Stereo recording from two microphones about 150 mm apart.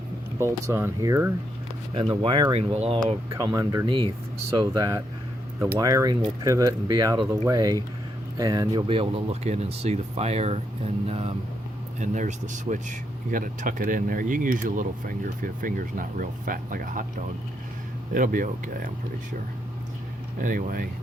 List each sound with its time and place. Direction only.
0.3 s speech: 15° right (ahead or behind)
2.0 s speech: 35° right (ahead or behind)
3.5 s speech: 20° right (ahead or behind)
3.8 s speech: 35° right (ahead or behind)
11.9 s speech: 55° right (ahead or behind)
20.4 s speech: 65° right (ahead or behind)